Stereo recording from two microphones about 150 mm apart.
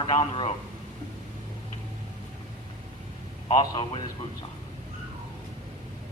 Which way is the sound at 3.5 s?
35° left (ahead or behind).